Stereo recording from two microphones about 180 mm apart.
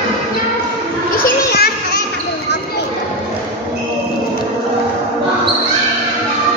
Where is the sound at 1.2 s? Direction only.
60° left (ahead or behind).